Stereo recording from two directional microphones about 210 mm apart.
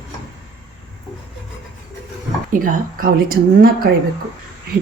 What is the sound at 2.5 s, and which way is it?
Speech, 40° right (ahead or behind).